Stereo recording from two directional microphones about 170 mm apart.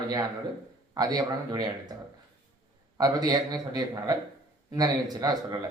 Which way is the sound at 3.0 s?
20° right (ahead or behind).